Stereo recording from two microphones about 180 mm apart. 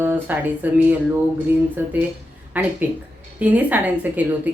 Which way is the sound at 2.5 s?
10° right (ahead or behind).